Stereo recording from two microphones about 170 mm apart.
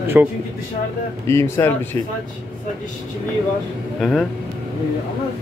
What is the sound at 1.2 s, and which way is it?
Speech, 15° left (ahead or behind).